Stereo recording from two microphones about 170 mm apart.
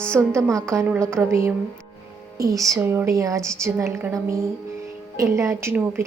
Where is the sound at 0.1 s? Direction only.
15° right (ahead or behind).